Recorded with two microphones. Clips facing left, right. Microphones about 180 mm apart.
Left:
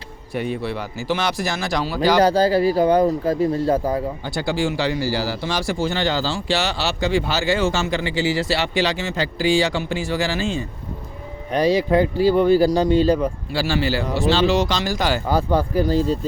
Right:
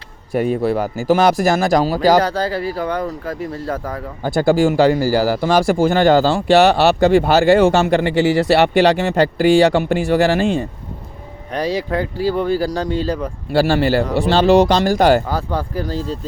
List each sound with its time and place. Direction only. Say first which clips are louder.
0.3 s speech: right 8 dB; 45° right (ahead or behind)
2.2 s speech: left 4 dB; 25° left (ahead or behind)
4.2 s speech: right 8 dB; 50° right (ahead or behind)
12.5 s speech: left 4 dB; 15° left (ahead or behind)
13.5 s speech: right 10 dB; 55° right (ahead or behind)
15.3 s speech: left 3 dB; 10° left (ahead or behind)